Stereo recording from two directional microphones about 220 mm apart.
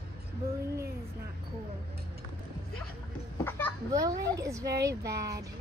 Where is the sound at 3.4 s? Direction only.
10° left (ahead or behind).